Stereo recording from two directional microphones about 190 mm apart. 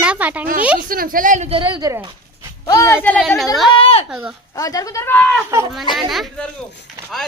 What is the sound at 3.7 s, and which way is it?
Speech, 30° left (ahead or behind).